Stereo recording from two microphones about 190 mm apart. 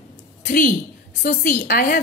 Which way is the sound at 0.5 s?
45° left (ahead or behind).